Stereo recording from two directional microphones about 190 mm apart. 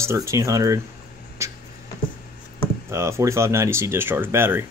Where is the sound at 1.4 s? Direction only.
15° right (ahead or behind).